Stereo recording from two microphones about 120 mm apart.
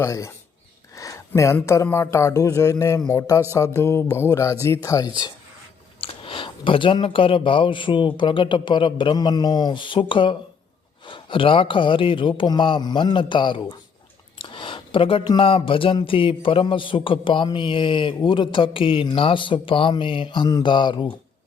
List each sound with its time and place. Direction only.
0.0 s speech: 25° left (ahead or behind)
0.9 s a sound: 30° left (ahead or behind)
1.6 s speech: 25° left (ahead or behind)
6.0 s a man's voice: 50° left (ahead or behind)
14.4 s a sound: 45° left (ahead or behind)
15.4 s a man's voice: 45° left (ahead or behind)